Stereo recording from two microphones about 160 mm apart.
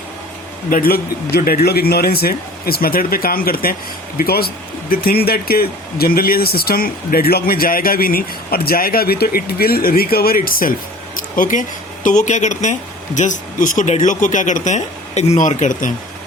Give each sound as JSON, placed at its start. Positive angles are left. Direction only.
{"t": 0.7, "sound": "speech", "side_deg": 65}
{"t": 11.2, "sound": "a sound", "side_deg": 55}
{"t": 12.0, "sound": "speech", "side_deg": 50}